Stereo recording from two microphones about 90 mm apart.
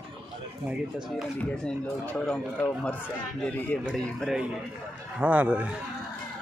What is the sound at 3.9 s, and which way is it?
Speech, 5° left (ahead or behind).